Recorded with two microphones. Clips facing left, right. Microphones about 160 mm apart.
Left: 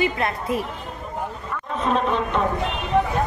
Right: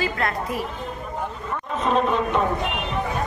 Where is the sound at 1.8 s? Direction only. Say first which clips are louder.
Right 1 dB; centre (ahead or behind).